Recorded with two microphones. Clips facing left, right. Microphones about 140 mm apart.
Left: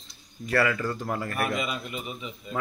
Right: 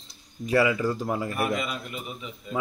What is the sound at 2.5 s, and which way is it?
Speech, 10° right (ahead or behind).